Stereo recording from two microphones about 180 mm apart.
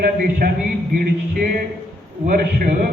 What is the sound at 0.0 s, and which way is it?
Speech, 55° right (ahead or behind).